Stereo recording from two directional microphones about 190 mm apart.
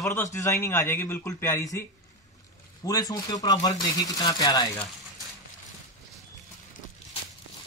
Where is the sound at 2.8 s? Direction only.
20° left (ahead or behind).